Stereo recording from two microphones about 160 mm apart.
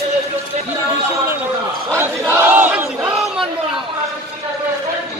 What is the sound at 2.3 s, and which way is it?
Battle cry, 10° right (ahead or behind).